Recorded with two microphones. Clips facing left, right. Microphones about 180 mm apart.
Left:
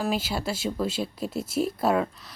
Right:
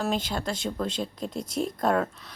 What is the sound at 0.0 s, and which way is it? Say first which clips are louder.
Speech: left 1 dB; 5° left (ahead or behind).